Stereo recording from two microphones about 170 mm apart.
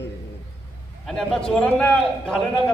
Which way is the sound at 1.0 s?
Centre (ahead or behind).